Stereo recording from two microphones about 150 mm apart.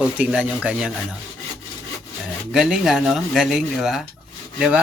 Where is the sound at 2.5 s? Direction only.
5° right (ahead or behind).